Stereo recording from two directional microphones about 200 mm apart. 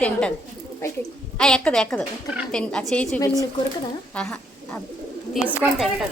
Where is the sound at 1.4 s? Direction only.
5° left (ahead or behind).